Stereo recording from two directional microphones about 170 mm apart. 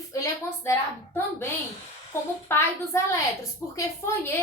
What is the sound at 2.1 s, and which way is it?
A woman's voice, 15° left (ahead or behind).